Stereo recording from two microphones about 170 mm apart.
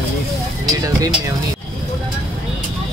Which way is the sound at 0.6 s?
20° right (ahead or behind).